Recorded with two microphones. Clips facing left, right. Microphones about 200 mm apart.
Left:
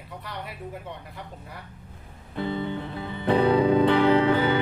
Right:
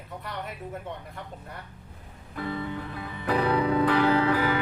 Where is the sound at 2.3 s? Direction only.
25° left (ahead or behind).